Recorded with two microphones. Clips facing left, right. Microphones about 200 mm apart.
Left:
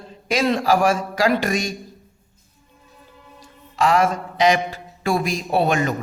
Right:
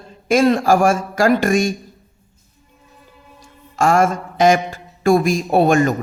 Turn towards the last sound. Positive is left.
turn(degrees=-45)  # may be behind; listen again after turning